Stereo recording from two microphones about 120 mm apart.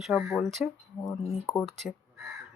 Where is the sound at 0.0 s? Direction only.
Centre (ahead or behind).